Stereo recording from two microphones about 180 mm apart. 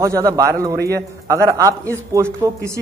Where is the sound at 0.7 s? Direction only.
60° right (ahead or behind).